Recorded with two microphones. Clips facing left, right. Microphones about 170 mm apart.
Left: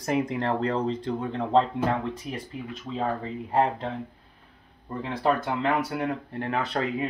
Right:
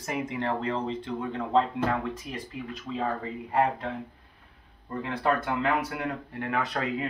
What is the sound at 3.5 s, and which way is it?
Speech, 30° left (ahead or behind).